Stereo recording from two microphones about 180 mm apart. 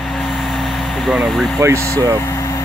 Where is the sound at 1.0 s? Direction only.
Centre (ahead or behind).